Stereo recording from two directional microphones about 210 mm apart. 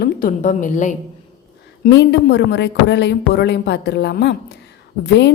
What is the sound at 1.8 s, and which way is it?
A woman's voice, 55° left (ahead or behind).